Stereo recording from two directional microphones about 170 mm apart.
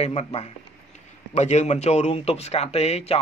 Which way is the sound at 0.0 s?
35° left (ahead or behind).